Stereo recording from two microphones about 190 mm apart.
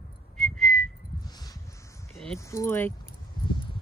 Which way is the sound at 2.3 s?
15° left (ahead or behind).